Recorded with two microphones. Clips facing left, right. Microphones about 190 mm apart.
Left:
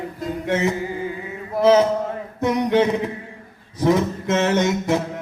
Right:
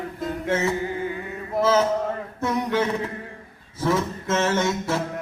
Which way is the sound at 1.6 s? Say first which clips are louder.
Left 5 dB; 15° left (ahead or behind).